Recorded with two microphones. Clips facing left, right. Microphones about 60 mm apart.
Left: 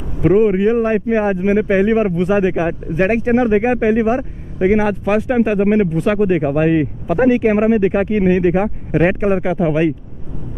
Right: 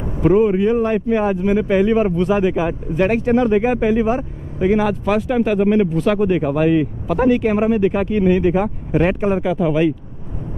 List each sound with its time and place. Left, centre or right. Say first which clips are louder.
0.2 s speech: left 2 dB; centre